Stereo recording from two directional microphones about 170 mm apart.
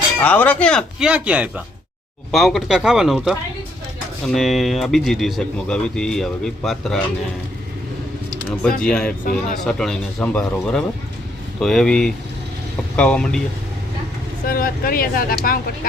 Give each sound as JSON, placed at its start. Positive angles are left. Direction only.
{"t": 0.2, "sound": "speech", "side_deg": 10}
{"t": 8.4, "sound": "speech", "side_deg": 5}
{"t": 14.4, "sound": "speech", "side_deg": 55}